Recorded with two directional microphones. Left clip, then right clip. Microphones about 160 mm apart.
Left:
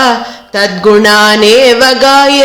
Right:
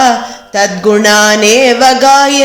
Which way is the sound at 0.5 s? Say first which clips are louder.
Left 2 dB; 20° left (ahead or behind).